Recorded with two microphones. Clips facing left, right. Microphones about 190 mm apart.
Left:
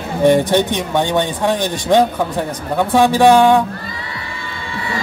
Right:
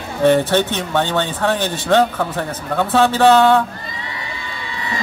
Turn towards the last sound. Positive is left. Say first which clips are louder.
# left 2 dB
turn(degrees=15)  # may be behind; listen again after turning